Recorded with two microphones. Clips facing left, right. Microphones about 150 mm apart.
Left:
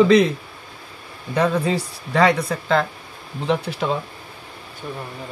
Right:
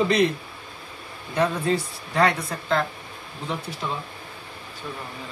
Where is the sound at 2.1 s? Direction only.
90° left.